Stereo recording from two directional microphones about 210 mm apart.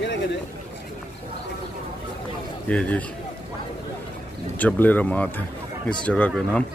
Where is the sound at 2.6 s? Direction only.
5° left (ahead or behind).